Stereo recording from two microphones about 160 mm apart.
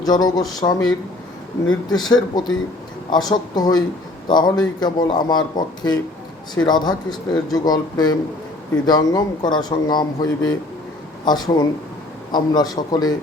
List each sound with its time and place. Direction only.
0.0 s a man's voice: 25° left (ahead or behind)